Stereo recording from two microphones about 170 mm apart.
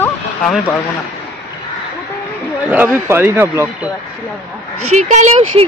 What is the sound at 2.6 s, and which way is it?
A man's voice, 10° right (ahead or behind).